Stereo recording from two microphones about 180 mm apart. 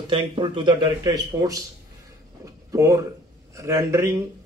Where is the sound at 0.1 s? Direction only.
30° right (ahead or behind).